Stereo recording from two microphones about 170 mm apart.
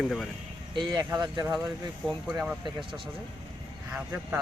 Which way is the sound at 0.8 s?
25° right (ahead or behind).